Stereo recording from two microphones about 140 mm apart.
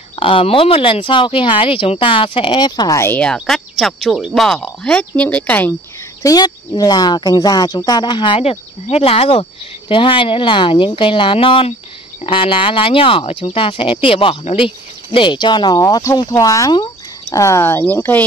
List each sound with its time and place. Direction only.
0.1 s speech: 40° left (ahead or behind)
3.1 s speech: 5° left (ahead or behind)
6.2 s speech: 25° left (ahead or behind); by 18.2 s 10° left (ahead or behind)